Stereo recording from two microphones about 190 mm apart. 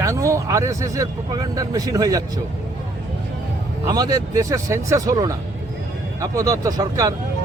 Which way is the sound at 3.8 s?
20° right (ahead or behind).